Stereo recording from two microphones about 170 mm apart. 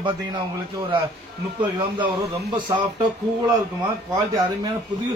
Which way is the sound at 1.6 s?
30° right (ahead or behind).